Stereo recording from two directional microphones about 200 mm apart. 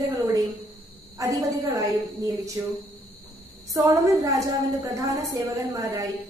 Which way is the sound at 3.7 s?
15° right (ahead or behind).